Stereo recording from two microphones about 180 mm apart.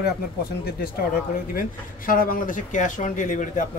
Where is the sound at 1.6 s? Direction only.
50° left (ahead or behind).